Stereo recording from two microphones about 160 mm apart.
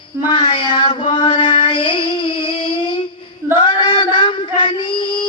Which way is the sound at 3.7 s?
30° left (ahead or behind).